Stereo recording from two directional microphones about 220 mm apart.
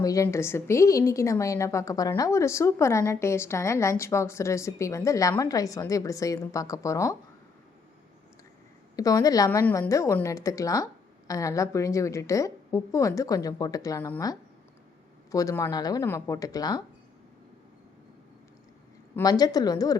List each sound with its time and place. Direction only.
0.0 s a woman's voice: 15° left (ahead or behind)
9.0 s a woman's voice: 15° left (ahead or behind)
19.1 s a woman's voice: 15° left (ahead or behind)